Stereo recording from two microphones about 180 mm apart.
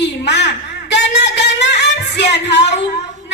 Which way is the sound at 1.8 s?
70° left (ahead or behind).